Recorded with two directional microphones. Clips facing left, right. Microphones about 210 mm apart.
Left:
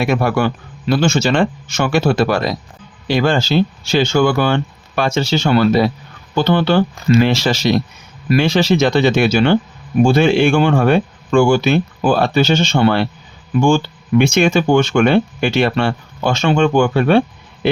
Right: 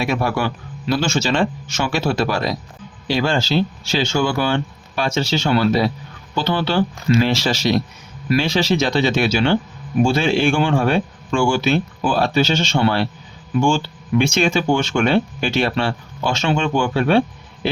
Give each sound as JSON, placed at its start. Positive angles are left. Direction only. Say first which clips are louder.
{"t": 0.0, "sound": "speech", "louder": "left 4 dB", "side_deg": 55}